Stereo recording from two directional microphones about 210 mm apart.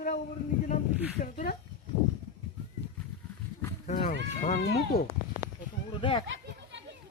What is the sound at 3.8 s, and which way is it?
Speech, 35° left (ahead or behind).